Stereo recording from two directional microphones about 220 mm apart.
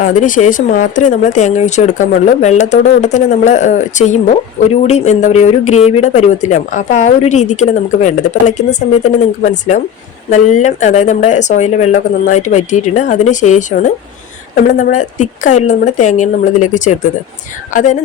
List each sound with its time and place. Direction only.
0.0 s speech: 35° left (ahead or behind)